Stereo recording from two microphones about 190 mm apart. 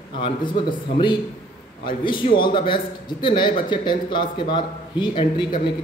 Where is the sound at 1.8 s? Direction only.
25° left (ahead or behind).